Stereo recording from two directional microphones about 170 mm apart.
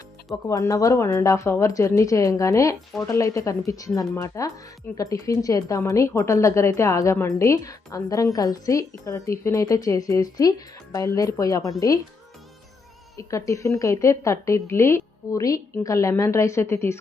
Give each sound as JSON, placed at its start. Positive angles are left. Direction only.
{"t": 0.4, "sound": "a woman's voice", "side_deg": 20}
{"t": 13.1, "sound": "a woman's voice", "side_deg": 20}